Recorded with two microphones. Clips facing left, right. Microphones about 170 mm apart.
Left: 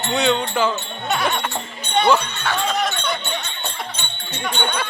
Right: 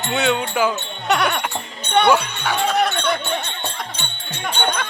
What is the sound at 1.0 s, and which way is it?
Goat, 70° right (ahead or behind).